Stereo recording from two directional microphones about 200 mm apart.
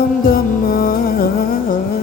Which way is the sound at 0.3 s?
45° left (ahead or behind).